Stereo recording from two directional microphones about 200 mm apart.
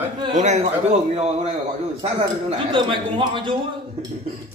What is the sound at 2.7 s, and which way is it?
Speech, 25° right (ahead or behind).